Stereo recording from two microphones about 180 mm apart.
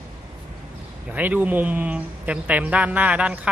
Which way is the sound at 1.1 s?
10° right (ahead or behind).